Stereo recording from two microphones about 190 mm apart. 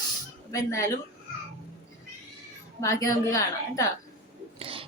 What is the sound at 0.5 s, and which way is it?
Speech, 15° left (ahead or behind).